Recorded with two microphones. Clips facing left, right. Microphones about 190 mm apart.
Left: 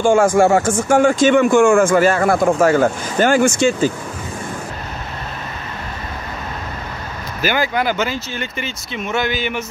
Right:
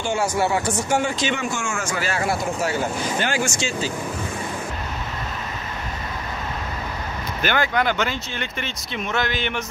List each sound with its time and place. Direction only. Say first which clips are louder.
0.0 s speech: left 10 dB; 50° left (ahead or behind)
7.4 s speech: left 3 dB; 5° left (ahead or behind)